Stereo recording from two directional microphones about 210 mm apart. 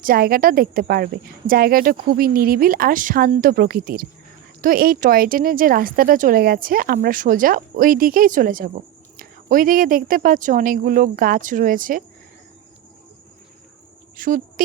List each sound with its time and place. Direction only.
0.0 s speech: 45° right (ahead or behind)
14.2 s speech: 40° right (ahead or behind)